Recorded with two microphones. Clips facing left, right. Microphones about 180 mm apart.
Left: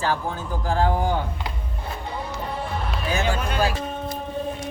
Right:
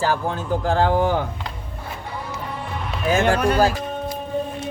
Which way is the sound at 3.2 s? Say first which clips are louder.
Right 9 dB; 65° right (ahead or behind).